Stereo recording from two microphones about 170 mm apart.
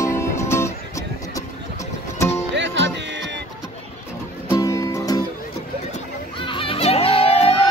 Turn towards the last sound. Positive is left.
turn(degrees=35)  # may be behind; listen again after turning